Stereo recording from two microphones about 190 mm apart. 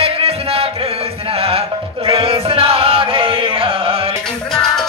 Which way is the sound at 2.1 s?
30° right (ahead or behind).